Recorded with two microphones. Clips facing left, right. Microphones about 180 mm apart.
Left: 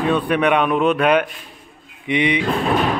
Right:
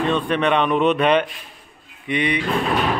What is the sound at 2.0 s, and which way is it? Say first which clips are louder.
Speech: left 3 dB; 15° left (ahead or behind).